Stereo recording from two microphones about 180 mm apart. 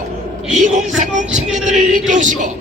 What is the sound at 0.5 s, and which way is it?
Speech, 45° right (ahead or behind).